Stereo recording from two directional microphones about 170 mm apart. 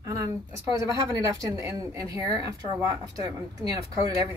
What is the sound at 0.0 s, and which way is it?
A woman's voice, 20° right (ahead or behind).